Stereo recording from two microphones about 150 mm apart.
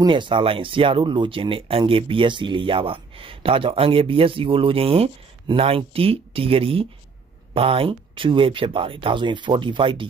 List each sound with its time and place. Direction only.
0.0 s speech: 30° right (ahead or behind)